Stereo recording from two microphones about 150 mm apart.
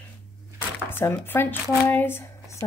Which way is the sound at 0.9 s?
15° left (ahead or behind).